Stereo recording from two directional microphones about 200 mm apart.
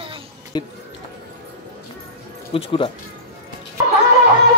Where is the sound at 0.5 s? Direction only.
20° left (ahead or behind).